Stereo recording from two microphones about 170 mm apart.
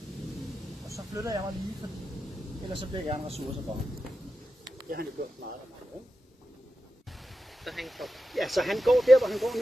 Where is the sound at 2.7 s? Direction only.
30° right (ahead or behind).